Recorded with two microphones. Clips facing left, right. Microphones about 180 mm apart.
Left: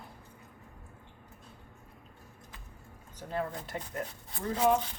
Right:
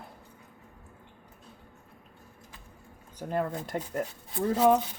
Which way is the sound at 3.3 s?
50° right (ahead or behind).